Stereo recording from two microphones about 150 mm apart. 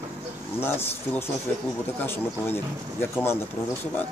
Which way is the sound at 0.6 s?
15° left (ahead or behind).